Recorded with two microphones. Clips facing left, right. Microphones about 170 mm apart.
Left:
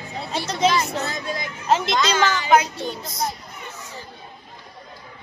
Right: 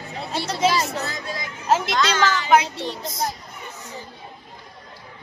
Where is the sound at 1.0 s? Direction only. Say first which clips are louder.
Left 2 dB; 20° left (ahead or behind).